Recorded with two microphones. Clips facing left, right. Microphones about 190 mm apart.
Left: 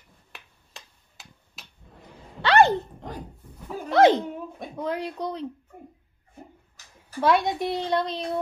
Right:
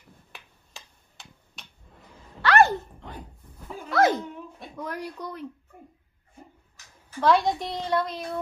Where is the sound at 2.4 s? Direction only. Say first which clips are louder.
Left 1 dB; 20° left (ahead or behind).